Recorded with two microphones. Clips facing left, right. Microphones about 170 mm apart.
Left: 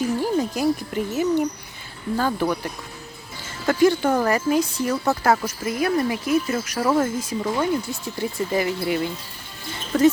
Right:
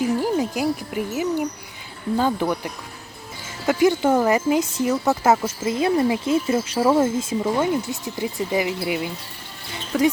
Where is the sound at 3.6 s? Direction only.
20° right (ahead or behind).